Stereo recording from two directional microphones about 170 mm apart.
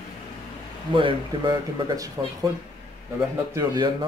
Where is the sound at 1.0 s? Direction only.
30° right (ahead or behind).